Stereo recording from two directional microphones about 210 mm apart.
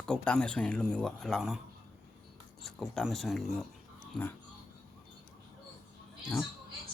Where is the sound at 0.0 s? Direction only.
5° left (ahead or behind).